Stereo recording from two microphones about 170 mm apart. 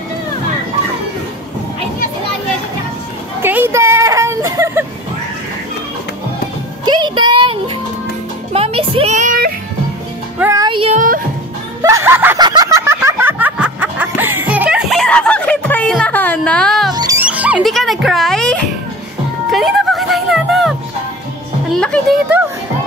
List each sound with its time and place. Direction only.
3.4 s a sound: 10° right (ahead or behind)
6.8 s music: 25° right (ahead or behind)
8.5 s a sound: 35° right (ahead or behind); by 9.5 s 50° right (ahead or behind)
10.4 s music: 20° right (ahead or behind)
10.7 s music: 30° right (ahead or behind)
11.8 s snicker: 15° right (ahead or behind)
12.4 s a sound: 25° right (ahead or behind); by 16.9 s 5° left (ahead or behind)
16.9 s music: 25° right (ahead or behind)
17.2 s music: 10° right (ahead or behind)
21.7 s music: 5° left (ahead or behind)